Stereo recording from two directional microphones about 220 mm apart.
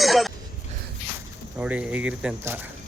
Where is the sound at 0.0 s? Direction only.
Centre (ahead or behind).